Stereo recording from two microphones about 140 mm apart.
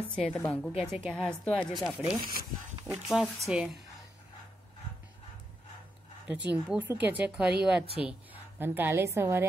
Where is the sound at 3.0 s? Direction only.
Centre (ahead or behind).